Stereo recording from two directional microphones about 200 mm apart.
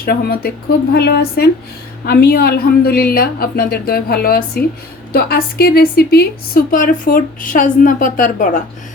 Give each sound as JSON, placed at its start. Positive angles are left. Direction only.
{"t": 0.0, "sound": "a woman's voice", "side_deg": 50}